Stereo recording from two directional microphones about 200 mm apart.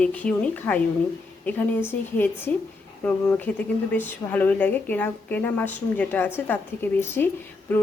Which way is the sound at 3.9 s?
10° left (ahead or behind).